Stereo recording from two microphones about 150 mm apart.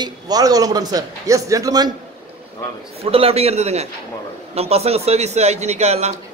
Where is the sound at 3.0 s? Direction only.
40° right (ahead or behind).